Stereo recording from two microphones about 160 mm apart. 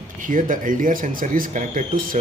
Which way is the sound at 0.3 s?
55° right (ahead or behind).